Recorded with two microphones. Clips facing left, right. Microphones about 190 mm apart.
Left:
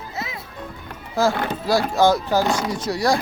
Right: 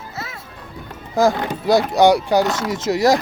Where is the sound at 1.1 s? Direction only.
15° right (ahead or behind).